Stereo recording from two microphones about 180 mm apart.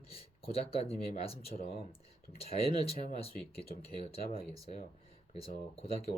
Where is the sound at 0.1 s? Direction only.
35° left (ahead or behind).